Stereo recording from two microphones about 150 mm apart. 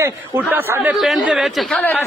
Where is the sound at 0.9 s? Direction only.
Centre (ahead or behind).